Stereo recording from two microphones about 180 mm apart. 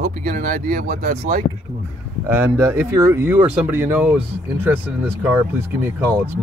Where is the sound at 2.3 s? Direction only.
10° right (ahead or behind).